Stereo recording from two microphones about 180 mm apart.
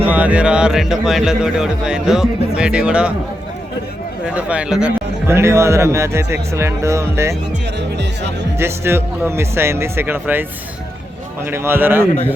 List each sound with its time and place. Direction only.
0.0 s speech: 10° right (ahead or behind)
4.4 s a man's voice: 5° right (ahead or behind)
7.8 s speech: 70° right (ahead or behind)
8.5 s a man's voice: 15° right (ahead or behind)
11.5 s a man's voice: 15° right (ahead or behind)